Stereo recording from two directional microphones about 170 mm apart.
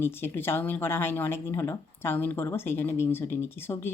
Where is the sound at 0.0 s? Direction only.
15° left (ahead or behind).